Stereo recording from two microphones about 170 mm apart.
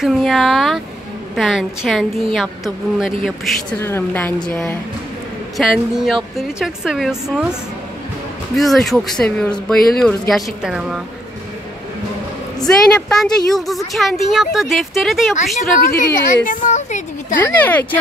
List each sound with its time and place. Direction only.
0.0 s speech: centre (ahead or behind)
3.8 s a woman's voice: 10° left (ahead or behind)
5.6 s speech: centre (ahead or behind)
8.5 s speech: centre (ahead or behind)
12.6 s speech: centre (ahead or behind)
16.4 s a woman's voice: 45° left (ahead or behind)
17.4 s a woman's voice: 10° left (ahead or behind)